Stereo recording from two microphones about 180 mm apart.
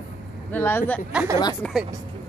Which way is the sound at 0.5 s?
10° left (ahead or behind).